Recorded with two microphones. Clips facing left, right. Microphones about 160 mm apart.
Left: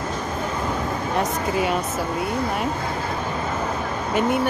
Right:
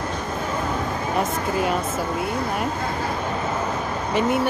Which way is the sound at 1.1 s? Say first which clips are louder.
Even; centre (ahead or behind).